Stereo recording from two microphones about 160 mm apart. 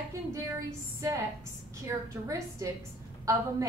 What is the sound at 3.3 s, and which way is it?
Speech, 20° right (ahead or behind).